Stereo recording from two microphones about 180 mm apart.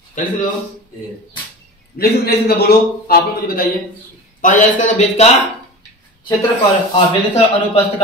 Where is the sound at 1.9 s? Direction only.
60° left (ahead or behind).